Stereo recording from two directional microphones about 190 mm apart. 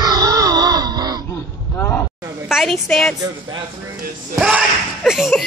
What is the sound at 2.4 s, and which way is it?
Speech, centre (ahead or behind).